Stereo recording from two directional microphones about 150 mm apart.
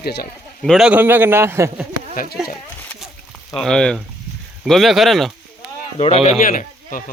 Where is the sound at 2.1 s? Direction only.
70° left (ahead or behind).